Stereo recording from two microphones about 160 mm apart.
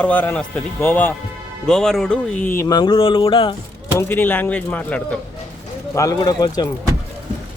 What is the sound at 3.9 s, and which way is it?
Speech, 10° left (ahead or behind).